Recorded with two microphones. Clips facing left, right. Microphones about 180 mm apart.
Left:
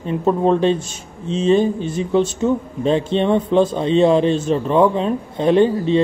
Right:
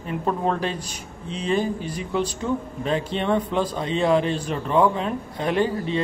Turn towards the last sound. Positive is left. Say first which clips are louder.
# left 8 dB
turn(degrees=25)  # may be behind; listen again after turning